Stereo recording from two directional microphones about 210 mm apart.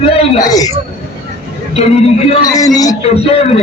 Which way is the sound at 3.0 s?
30° left (ahead or behind).